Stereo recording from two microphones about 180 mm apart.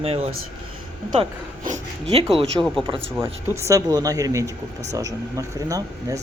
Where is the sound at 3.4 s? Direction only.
15° right (ahead or behind).